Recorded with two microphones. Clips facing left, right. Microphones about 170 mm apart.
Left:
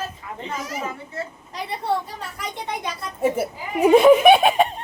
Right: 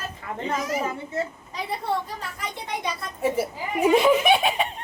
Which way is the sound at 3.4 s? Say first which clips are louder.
Left 3 dB; 55° left (ahead or behind).